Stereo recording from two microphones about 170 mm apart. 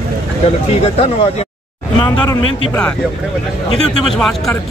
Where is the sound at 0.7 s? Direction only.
35° left (ahead or behind).